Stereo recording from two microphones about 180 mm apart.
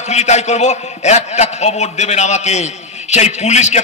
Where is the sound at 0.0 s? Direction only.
40° left (ahead or behind).